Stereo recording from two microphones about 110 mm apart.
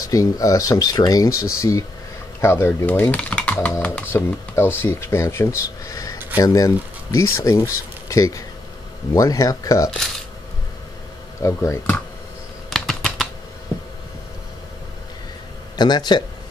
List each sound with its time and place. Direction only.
0.1 s speech: 30° left (ahead or behind)
9.8 s speech: 5° left (ahead or behind)
11.4 s speech: 25° left (ahead or behind)
12.6 s typing: 5° left (ahead or behind)
15.7 s speech: 40° left (ahead or behind)